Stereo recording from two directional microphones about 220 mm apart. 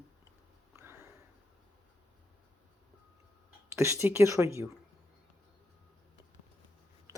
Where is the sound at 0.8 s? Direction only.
10° right (ahead or behind).